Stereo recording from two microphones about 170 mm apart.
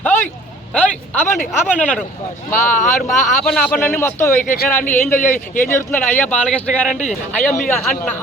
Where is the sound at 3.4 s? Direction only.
5° left (ahead or behind).